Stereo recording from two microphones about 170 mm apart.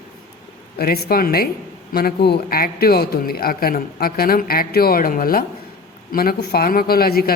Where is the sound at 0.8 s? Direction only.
65° left (ahead or behind).